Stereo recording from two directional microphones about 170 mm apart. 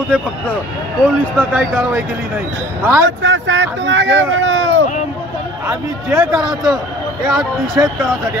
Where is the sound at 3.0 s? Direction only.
90° right.